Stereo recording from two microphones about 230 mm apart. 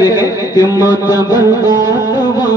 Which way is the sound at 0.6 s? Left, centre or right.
Centre.